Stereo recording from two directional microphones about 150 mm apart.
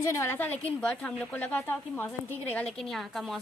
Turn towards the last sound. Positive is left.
turn(degrees=0)  # may be behind; listen again after turning